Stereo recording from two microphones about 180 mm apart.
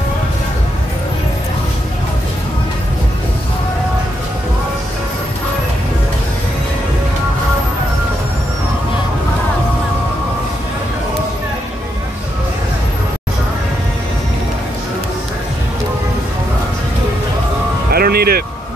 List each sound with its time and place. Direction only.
17.9 s music: 60° right (ahead or behind)